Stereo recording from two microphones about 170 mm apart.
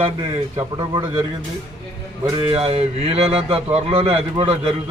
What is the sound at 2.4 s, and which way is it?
A man's voice, 35° right (ahead or behind).